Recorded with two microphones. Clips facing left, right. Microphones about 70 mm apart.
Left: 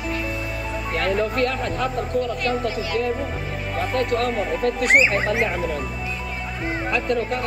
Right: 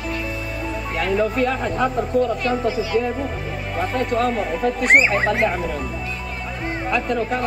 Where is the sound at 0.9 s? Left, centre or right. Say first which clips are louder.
Right 2 dB; centre.